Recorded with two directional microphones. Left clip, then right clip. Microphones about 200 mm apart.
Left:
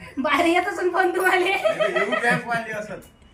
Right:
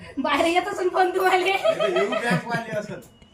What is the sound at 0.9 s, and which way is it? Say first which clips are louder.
Speech: even; 10° left (ahead or behind).